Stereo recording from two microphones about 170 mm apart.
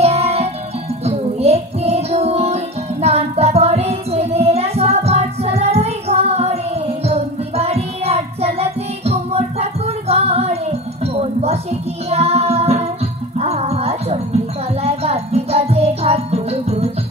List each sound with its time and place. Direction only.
0.0 s music: 35° right (ahead or behind)